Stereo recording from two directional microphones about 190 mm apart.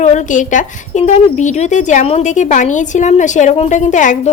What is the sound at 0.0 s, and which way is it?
A woman's voice, 40° left (ahead or behind).